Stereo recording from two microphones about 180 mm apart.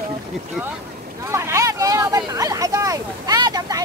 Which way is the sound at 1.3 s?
15° right (ahead or behind).